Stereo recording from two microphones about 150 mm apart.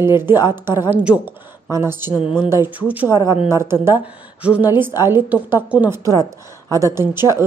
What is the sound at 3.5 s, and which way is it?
A woman's voice, 15° right (ahead or behind).